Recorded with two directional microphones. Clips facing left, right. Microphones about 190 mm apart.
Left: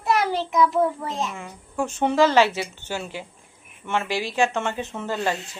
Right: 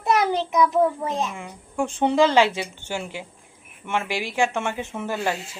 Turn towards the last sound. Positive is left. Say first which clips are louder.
# even
turn(degrees=-10)  # may be behind; listen again after turning